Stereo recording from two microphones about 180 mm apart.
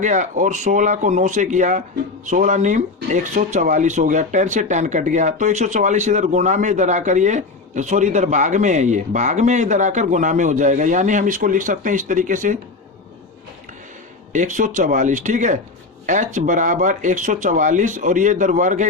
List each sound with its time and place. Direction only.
0.0 s speech: 45° right (ahead or behind)
14.3 s speech: 45° right (ahead or behind)